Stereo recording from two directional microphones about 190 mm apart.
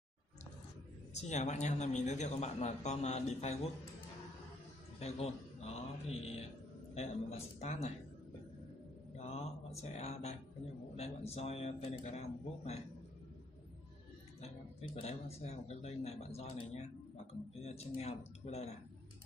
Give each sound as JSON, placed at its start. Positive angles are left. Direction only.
{"t": 1.3, "sound": "speech", "side_deg": 40}
{"t": 5.0, "sound": "a man's voice", "side_deg": 35}
{"t": 9.1, "sound": "mantra", "side_deg": 35}
{"t": 11.0, "sound": "speech", "side_deg": 35}
{"t": 14.4, "sound": "speech", "side_deg": 35}